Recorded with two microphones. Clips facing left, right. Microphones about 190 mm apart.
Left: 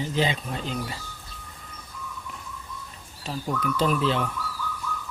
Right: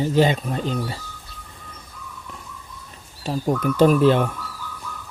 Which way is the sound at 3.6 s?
50° right (ahead or behind).